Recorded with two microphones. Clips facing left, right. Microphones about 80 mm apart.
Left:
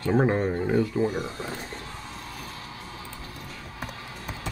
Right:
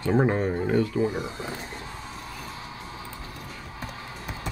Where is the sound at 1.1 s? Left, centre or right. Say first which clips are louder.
Even; centre.